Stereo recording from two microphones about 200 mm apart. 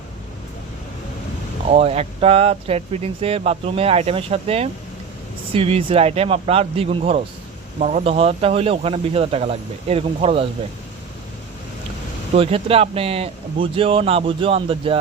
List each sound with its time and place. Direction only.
1.7 s speech: 30° right (ahead or behind)
12.3 s speech: 30° right (ahead or behind)